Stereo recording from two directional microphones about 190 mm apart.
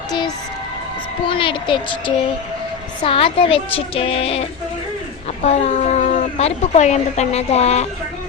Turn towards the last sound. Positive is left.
turn(degrees=35)  # may be behind; listen again after turning